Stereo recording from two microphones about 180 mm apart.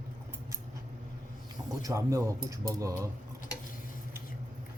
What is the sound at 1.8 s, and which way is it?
Speech, 15° right (ahead or behind).